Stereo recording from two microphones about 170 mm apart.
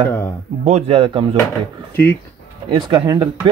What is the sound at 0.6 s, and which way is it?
Speech, 40° right (ahead or behind).